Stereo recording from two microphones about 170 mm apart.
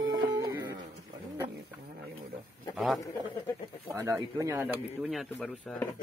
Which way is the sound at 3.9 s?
20° right (ahead or behind).